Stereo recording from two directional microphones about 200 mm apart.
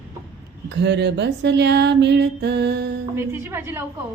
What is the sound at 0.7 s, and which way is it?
Music, 60° right (ahead or behind).